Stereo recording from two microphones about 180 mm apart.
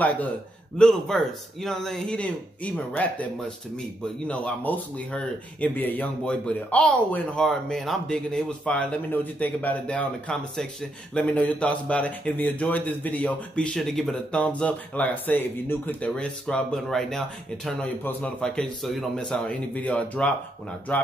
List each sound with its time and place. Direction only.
0.7 s a man's voice: 5° left (ahead or behind)
4.3 s a man's voice: 5° left (ahead or behind)